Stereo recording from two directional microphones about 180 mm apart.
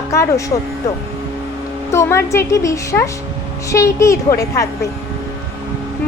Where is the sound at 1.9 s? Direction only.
15° left (ahead or behind).